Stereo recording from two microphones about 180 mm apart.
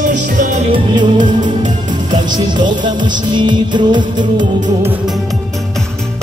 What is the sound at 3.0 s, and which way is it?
Music, 25° right (ahead or behind).